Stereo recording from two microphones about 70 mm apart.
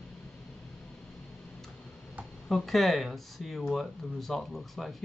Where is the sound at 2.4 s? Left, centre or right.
Centre.